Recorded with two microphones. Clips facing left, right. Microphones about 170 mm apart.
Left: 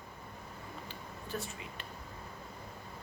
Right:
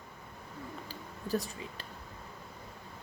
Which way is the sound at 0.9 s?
35° right (ahead or behind).